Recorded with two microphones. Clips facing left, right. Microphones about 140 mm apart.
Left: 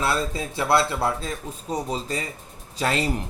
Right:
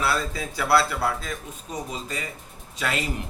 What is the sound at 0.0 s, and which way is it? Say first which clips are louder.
Speech: left 1 dB; 25° left (ahead or behind).